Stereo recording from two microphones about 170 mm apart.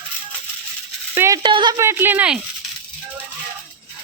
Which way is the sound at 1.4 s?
25° right (ahead or behind).